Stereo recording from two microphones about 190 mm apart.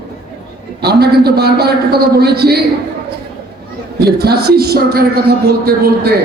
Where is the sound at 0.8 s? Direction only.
55° right (ahead or behind).